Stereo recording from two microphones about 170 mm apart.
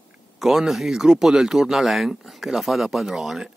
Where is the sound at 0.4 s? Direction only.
Centre (ahead or behind).